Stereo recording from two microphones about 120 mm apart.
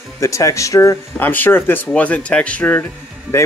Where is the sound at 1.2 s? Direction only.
15° left (ahead or behind).